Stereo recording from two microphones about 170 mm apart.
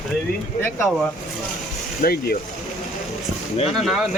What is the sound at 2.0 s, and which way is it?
Speech, 65° left (ahead or behind).